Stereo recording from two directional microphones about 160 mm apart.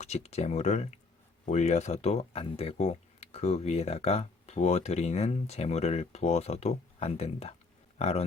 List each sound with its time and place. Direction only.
0.0 s speech: 40° left (ahead or behind)